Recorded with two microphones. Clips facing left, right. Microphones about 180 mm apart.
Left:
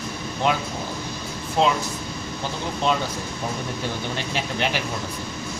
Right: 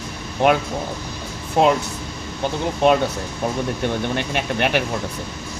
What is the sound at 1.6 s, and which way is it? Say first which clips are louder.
Speech: right 4 dB; 60° right (ahead or behind).